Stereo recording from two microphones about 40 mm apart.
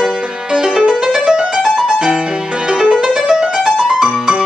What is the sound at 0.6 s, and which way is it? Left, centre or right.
Music, centre.